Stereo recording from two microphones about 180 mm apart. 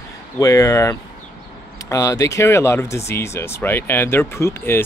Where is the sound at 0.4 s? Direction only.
20° left (ahead or behind).